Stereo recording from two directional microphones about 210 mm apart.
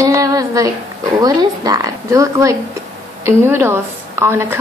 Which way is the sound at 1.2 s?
20° right (ahead or behind).